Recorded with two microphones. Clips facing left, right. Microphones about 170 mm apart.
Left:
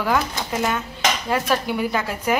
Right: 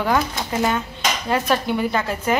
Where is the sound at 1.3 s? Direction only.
5° left (ahead or behind).